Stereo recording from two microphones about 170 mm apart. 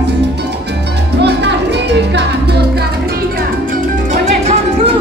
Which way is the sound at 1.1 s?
85° right.